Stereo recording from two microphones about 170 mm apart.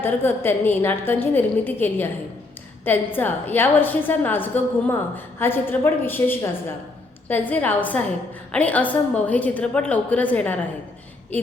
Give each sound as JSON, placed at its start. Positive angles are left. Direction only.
{"t": 0.0, "sound": "a woman's voice", "side_deg": 15}